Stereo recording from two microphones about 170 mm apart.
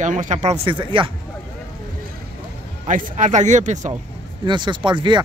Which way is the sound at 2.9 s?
50° right (ahead or behind).